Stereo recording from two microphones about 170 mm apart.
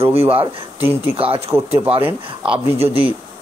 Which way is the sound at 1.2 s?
35° right (ahead or behind).